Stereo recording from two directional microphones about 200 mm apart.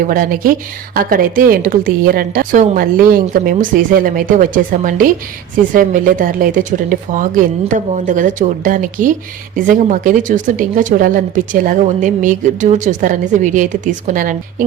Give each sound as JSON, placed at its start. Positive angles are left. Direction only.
{"t": 0.0, "sound": "a woman's voice", "side_deg": -45}